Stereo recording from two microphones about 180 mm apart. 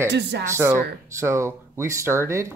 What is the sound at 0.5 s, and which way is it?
Speech, 15° right (ahead or behind).